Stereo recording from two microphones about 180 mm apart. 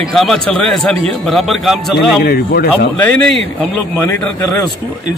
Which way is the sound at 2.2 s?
60° left (ahead or behind).